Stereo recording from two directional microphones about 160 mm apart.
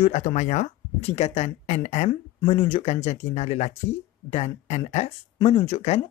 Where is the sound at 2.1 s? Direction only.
35° left (ahead or behind).